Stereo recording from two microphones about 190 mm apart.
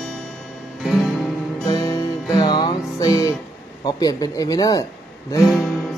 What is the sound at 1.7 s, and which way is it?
Music, 20° left (ahead or behind).